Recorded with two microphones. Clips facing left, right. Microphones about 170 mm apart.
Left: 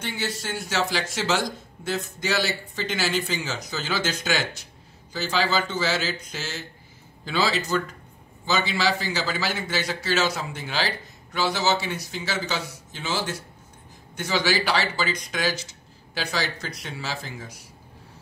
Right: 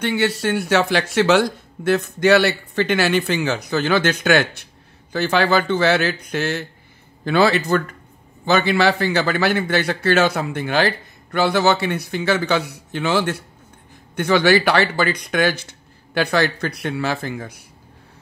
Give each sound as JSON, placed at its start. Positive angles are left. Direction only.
{"t": 0.0, "sound": "a man's voice", "side_deg": -65}